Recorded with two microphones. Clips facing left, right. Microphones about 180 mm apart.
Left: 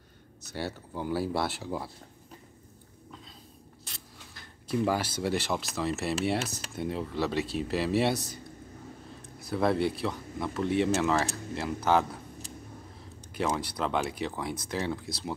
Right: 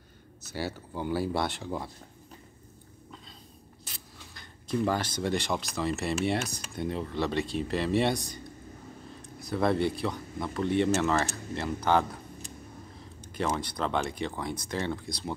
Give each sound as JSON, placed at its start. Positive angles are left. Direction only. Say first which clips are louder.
{"t": 0.4, "sound": "speech", "louder": "right 1 dB", "side_deg": 0}
{"t": 3.8, "sound": "speech", "louder": "right 2 dB", "side_deg": 0}
{"t": 9.4, "sound": "speech", "louder": "even", "side_deg": 5}
{"t": 13.2, "sound": "speech", "louder": "even", "side_deg": 0}